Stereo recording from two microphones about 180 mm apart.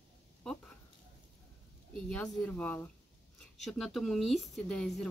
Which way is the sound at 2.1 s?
10° left (ahead or behind).